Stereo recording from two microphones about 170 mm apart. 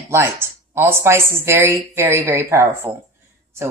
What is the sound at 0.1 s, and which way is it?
Speech, 15° right (ahead or behind).